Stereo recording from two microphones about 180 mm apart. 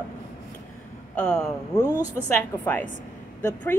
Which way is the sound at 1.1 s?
5° left (ahead or behind).